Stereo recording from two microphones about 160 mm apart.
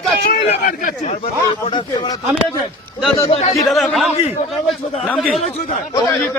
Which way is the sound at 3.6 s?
Centre (ahead or behind).